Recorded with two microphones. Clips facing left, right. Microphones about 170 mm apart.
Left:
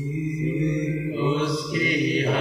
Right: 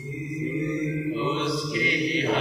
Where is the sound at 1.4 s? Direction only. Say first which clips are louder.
Left 2 dB; 45° left (ahead or behind).